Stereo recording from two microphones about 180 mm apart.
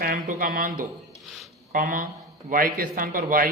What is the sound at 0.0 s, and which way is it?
A man's voice, 50° right (ahead or behind).